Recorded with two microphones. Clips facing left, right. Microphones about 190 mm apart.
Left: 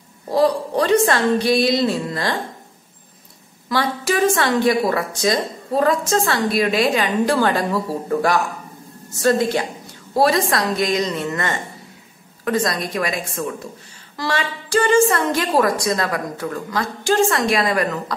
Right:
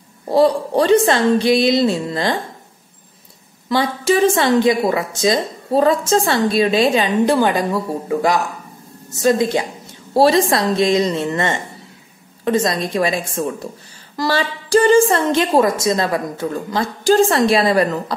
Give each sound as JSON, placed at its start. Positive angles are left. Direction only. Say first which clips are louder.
{"t": 0.3, "sound": "a woman's voice", "louder": "right 3 dB", "side_deg": -30}
{"t": 3.6, "sound": "a woman's voice", "louder": "right 4 dB", "side_deg": -25}